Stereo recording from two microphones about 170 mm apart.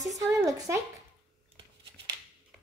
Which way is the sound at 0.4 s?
20° right (ahead or behind).